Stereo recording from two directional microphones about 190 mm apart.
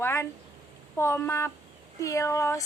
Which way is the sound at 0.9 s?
15° left (ahead or behind).